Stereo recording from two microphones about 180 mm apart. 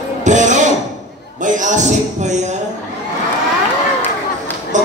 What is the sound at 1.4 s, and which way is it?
Speech, 45° right (ahead or behind).